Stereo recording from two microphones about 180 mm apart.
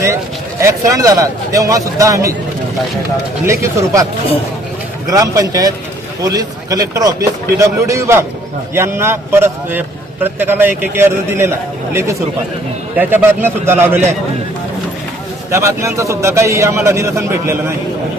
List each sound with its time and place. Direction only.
0.6 s a man's voice: 15° right (ahead or behind)
3.4 s a man's voice: 15° right (ahead or behind)
5.0 s a man's voice: 20° right (ahead or behind)
13.0 s a man's voice: 10° right (ahead or behind)
15.4 s a man's voice: 15° right (ahead or behind)